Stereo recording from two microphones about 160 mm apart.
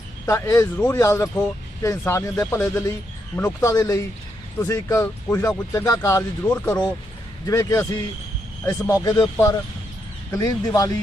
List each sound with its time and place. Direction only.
0.3 s speech: 20° left (ahead or behind)
6.5 s speech: 5° left (ahead or behind)
7.4 s speech: 20° left (ahead or behind)